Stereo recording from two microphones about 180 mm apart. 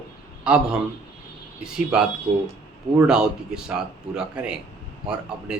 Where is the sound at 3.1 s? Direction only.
5° right (ahead or behind).